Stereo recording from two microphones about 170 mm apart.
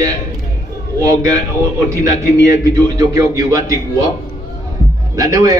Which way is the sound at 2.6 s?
20° right (ahead or behind).